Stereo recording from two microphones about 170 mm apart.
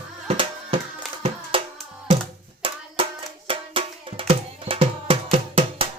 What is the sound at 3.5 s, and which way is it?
Music, 30° right (ahead or behind).